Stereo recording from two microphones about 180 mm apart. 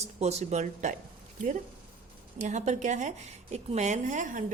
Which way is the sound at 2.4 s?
40° right (ahead or behind).